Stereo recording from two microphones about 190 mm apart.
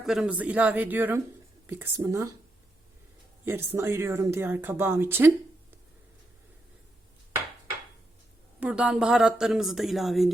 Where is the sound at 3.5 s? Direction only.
10° right (ahead or behind).